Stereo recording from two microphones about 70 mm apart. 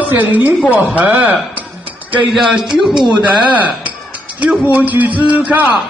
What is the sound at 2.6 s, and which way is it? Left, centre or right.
Speech, centre.